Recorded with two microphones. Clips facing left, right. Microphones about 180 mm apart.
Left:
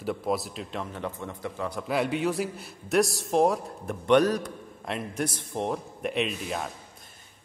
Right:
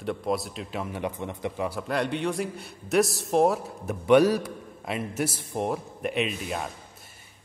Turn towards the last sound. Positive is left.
turn(degrees=0)  # may be behind; listen again after turning